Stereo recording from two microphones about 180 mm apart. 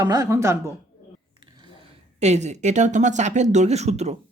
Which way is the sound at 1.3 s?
25° right (ahead or behind).